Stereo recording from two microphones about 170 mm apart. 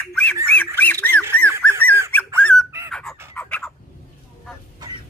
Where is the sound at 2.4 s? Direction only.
5° left (ahead or behind).